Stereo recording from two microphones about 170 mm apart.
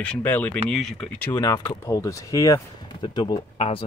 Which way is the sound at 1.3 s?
20° left (ahead or behind).